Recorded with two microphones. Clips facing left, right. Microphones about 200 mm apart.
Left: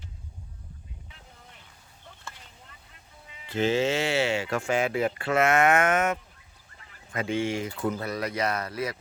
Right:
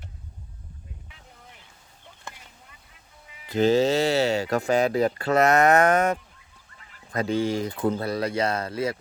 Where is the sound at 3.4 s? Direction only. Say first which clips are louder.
Right 5 dB; 40° right (ahead or behind).